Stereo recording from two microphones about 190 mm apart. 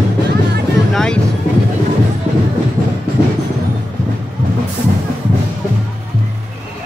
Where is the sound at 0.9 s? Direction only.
5° left (ahead or behind).